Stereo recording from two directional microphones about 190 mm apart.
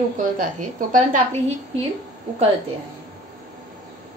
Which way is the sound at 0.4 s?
45° right (ahead or behind).